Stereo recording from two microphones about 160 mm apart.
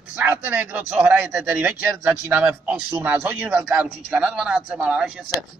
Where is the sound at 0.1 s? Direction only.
10° right (ahead or behind).